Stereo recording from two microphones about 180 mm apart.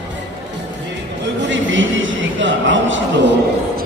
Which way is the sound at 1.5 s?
90° right.